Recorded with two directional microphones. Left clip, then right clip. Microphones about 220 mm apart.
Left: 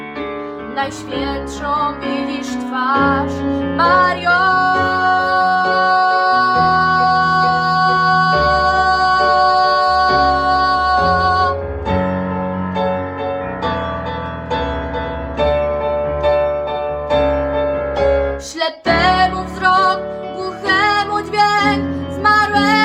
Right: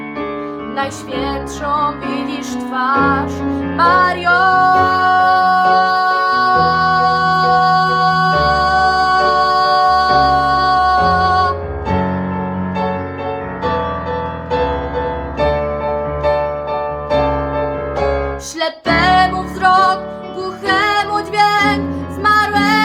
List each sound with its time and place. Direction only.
0.8 s music: 10° right (ahead or behind)
11.9 s music: 35° left (ahead or behind)
15.4 s music: 35° left (ahead or behind)
18.6 s music: 10° right (ahead or behind)